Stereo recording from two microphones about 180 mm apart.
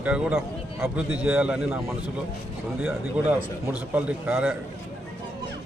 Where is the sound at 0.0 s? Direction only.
5° right (ahead or behind).